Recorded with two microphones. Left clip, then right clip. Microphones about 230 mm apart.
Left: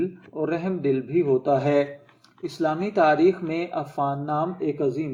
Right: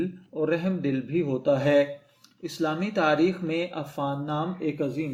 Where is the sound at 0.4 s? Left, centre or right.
Right.